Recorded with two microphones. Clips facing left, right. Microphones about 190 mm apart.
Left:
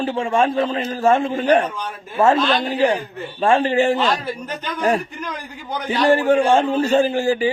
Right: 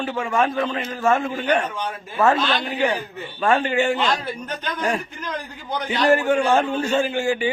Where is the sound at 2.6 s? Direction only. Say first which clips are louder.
Left 4 dB; 35° left (ahead or behind).